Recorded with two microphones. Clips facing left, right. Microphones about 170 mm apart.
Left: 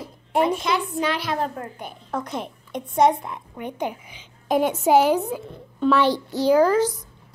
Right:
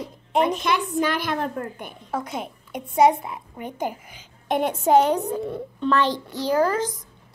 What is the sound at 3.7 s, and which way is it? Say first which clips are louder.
Speech: even; 45° right (ahead or behind).